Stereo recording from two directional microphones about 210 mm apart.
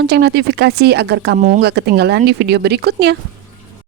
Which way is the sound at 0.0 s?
50° right (ahead or behind).